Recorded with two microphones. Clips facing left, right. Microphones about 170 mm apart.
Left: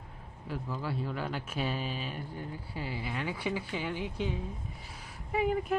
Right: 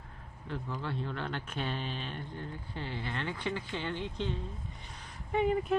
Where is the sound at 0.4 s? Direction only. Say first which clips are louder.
Left 1 dB; 5° left (ahead or behind).